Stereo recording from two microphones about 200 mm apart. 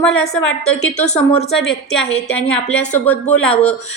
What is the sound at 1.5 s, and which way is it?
A woman's voice, centre (ahead or behind).